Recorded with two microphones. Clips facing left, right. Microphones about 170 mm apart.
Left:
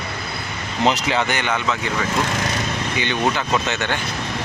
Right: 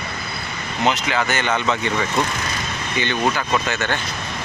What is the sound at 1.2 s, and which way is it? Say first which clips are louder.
Speech: right 1 dB; 15° left (ahead or behind).